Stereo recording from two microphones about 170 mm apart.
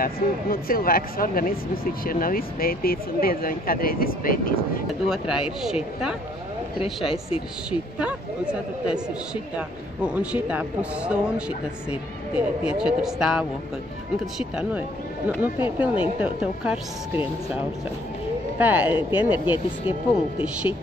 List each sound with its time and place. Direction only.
0.0 s speech: 60° left (ahead or behind)
5.0 s speech: 5° right (ahead or behind)
7.1 s speech: 35° left (ahead or behind)
8.0 s speech: 5° right (ahead or behind)
15.2 s speech: 10° right (ahead or behind)
18.6 s speech: 10° right (ahead or behind)